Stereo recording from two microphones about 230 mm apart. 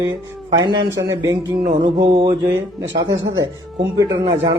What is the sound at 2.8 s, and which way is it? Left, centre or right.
Speech, right.